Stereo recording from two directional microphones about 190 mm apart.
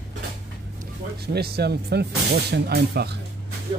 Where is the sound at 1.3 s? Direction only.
55° right (ahead or behind).